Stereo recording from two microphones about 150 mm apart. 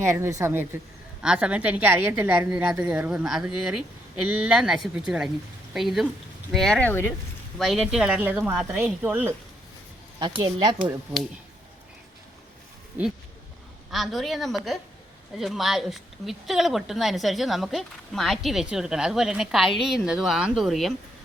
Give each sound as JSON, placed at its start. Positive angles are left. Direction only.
{"t": 0.0, "sound": "a woman's voice", "side_deg": -20}
{"t": 7.6, "sound": "a woman's voice", "side_deg": 0}
{"t": 10.4, "sound": "a woman's voice", "side_deg": -30}
{"t": 13.9, "sound": "a woman's voice", "side_deg": 0}